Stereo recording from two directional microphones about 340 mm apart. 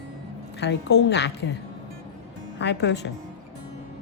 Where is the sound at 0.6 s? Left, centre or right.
Left.